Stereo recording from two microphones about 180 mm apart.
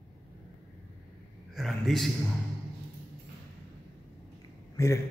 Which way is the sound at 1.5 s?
Centre (ahead or behind).